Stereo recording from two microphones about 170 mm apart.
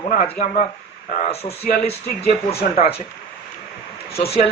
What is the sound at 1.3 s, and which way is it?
Speech, 35° left (ahead or behind).